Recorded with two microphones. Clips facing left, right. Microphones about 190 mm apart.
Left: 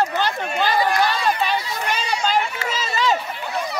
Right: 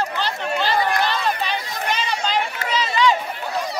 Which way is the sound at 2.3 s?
45° left (ahead or behind).